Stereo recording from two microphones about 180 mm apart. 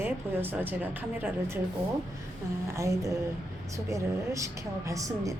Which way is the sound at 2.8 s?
15° right (ahead or behind).